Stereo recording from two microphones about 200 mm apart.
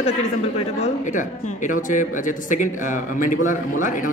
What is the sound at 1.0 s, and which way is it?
A man's voice, 40° left (ahead or behind).